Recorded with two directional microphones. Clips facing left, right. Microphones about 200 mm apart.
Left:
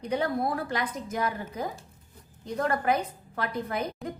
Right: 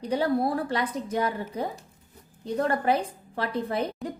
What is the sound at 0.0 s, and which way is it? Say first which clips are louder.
A woman's voice: right 3 dB; 35° right (ahead or behind).